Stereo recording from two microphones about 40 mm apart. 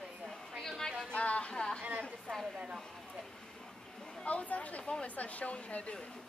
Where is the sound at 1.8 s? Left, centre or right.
Right.